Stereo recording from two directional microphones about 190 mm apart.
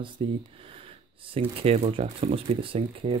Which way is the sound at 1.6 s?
30° right (ahead or behind).